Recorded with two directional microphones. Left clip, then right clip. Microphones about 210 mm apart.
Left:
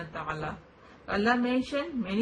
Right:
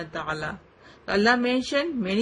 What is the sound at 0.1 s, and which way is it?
A woman's voice, 40° right (ahead or behind).